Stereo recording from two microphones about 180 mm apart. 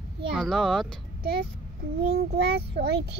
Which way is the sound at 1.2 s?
60° right (ahead or behind).